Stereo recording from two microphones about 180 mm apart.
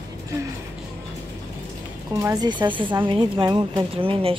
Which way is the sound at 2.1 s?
20° right (ahead or behind).